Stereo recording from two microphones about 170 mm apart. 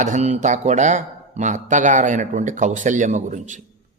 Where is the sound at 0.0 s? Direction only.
45° right (ahead or behind).